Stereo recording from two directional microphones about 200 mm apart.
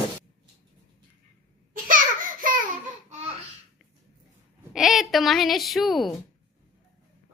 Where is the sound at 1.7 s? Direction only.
45° right (ahead or behind).